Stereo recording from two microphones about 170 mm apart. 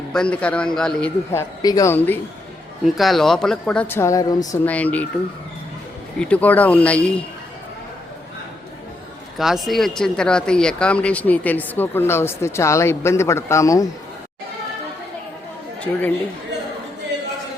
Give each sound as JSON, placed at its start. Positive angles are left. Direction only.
{"t": 0.1, "sound": "speech", "side_deg": 5}
{"t": 1.3, "sound": "speech", "side_deg": 20}
{"t": 2.8, "sound": "speech", "side_deg": 0}
{"t": 4.6, "sound": "speech", "side_deg": 10}
{"t": 6.1, "sound": "speech", "side_deg": 10}
{"t": 9.4, "sound": "speech", "side_deg": 0}
{"t": 15.8, "sound": "speech", "side_deg": 10}